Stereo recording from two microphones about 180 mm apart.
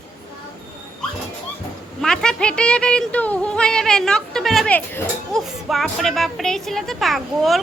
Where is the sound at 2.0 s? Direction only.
5° left (ahead or behind).